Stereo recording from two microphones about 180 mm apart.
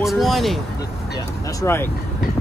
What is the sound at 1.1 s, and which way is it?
Speech, 20° left (ahead or behind).